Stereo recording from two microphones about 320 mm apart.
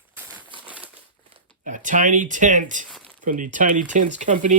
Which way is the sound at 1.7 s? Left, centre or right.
Right.